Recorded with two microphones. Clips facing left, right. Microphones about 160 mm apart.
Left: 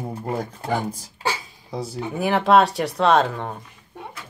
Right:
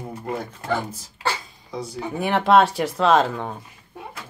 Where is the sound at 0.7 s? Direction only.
15° left (ahead or behind).